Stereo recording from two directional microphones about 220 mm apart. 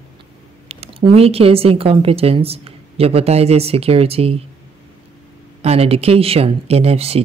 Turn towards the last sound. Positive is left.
turn(degrees=-25)  # may be behind; listen again after turning